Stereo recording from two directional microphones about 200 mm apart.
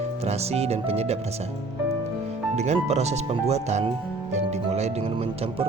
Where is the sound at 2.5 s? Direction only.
35° right (ahead or behind).